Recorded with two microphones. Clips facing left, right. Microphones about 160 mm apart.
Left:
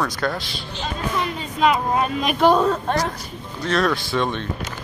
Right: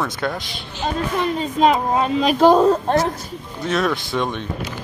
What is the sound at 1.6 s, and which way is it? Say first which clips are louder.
A woman's voice: right 2 dB; 30° right (ahead or behind).